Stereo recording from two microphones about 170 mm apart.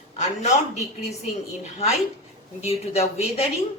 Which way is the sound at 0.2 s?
45° left (ahead or behind).